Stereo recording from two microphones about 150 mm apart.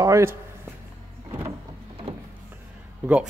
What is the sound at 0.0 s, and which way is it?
Speech, 20° right (ahead or behind).